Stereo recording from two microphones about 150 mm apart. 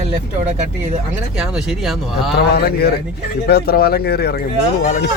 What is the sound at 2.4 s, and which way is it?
Speech, 90° left.